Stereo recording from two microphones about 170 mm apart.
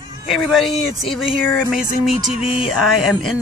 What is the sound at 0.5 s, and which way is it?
Speech, centre (ahead or behind).